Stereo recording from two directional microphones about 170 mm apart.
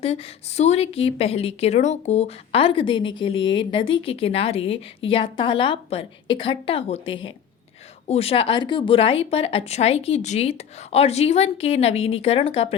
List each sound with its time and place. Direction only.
0.0 s a woman's voice: 35° left (ahead or behind)